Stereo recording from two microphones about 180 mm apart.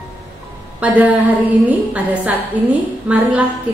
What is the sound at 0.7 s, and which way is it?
A woman's voice, 10° right (ahead or behind).